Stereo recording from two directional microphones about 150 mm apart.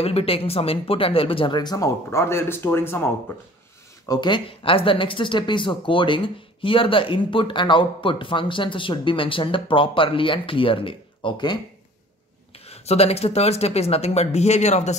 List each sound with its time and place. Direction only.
0.0 s speech: 40° left (ahead or behind); by 3.1 s 15° left (ahead or behind)
4.0 s speech: 25° left (ahead or behind)
12.5 s speech: 45° left (ahead or behind)